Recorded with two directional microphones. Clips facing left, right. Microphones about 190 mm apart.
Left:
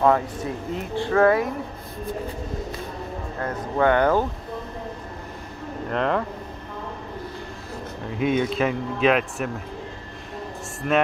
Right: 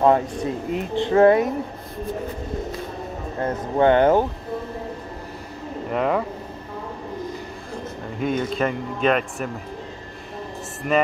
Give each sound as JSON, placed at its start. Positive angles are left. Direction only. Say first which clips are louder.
{"t": 0.0, "sound": "speech", "louder": "right 2 dB", "side_deg": -20}
{"t": 3.3, "sound": "speech", "louder": "right 3 dB", "side_deg": -25}
{"t": 5.9, "sound": "speech", "louder": "right 2 dB", "side_deg": -5}
{"t": 8.2, "sound": "a man's voice", "louder": "left 1 dB", "side_deg": 0}
{"t": 10.8, "sound": "speech", "louder": "right 1 dB", "side_deg": -15}